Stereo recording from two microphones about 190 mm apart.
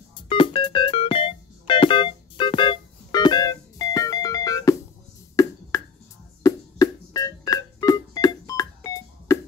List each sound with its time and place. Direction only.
0.1 s music: 25° left (ahead or behind)
5.3 s a sound: 15° left (ahead or behind)
6.4 s music: 20° left (ahead or behind)